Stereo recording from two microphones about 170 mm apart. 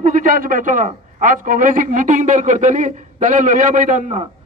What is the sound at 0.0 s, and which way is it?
A man's voice, 50° right (ahead or behind).